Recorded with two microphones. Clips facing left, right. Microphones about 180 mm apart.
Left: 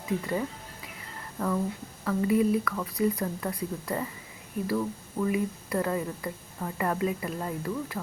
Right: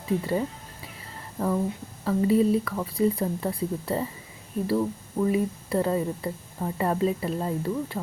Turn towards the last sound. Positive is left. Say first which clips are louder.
# right 4 dB
turn(degrees=-25)  # may be behind; listen again after turning